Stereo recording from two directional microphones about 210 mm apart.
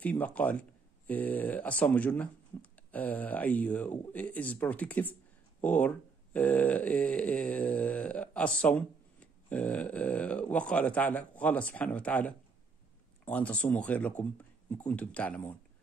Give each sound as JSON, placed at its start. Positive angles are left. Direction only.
{"t": 0.0, "sound": "speech", "side_deg": 10}